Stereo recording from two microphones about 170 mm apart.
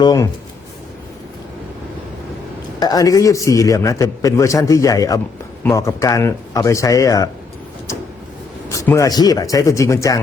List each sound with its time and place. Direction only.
0.0 s a man's voice: 20° left (ahead or behind)
2.8 s a man's voice: 20° left (ahead or behind)
8.7 s a man's voice: 20° left (ahead or behind)